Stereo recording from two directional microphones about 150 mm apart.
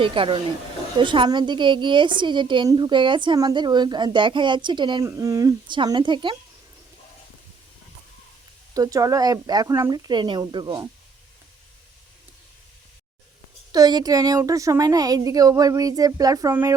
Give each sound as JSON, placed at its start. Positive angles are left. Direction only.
{"t": 0.0, "sound": "a woman's voice", "side_deg": -35}
{"t": 8.7, "sound": "a woman's voice", "side_deg": -25}
{"t": 13.7, "sound": "a woman's voice", "side_deg": -25}